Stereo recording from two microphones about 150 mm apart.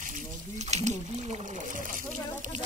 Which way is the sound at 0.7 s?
45° right (ahead or behind).